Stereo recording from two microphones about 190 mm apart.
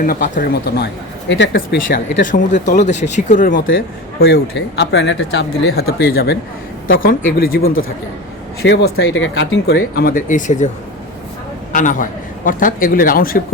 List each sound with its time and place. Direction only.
0.0 s speech: 45° left (ahead or behind)
1.3 s speech: 75° left (ahead or behind)
2.2 s speech: 40° left (ahead or behind)
3.7 s a man's voice: 90° left
4.3 s speech: 60° left (ahead or behind)
7.3 s speech: 50° left (ahead or behind)
8.6 s speech: 70° left (ahead or behind); by 9.7 s 85° left
9.7 s speech: 50° left (ahead or behind)
11.7 s speech: 40° left (ahead or behind)